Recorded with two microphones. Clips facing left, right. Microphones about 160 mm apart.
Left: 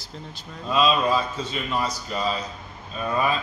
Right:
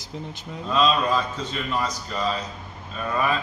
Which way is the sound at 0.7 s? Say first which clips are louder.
Even; 10° left (ahead or behind).